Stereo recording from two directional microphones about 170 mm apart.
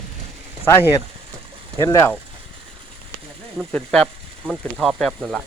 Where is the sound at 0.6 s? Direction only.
15° left (ahead or behind).